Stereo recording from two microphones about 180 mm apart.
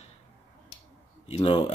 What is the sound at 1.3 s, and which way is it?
Speech, 25° left (ahead or behind).